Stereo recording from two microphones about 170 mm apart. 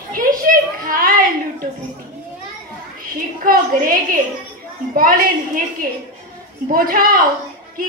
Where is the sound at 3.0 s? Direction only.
55° right (ahead or behind).